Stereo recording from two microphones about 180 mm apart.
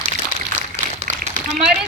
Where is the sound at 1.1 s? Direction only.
45° right (ahead or behind).